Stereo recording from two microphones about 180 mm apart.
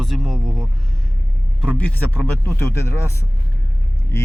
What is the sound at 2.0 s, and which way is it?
Speech, 15° left (ahead or behind).